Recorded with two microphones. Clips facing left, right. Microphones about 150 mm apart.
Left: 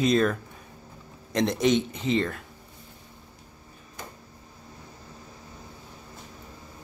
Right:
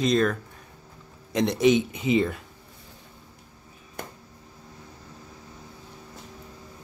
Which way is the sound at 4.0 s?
60° right (ahead or behind).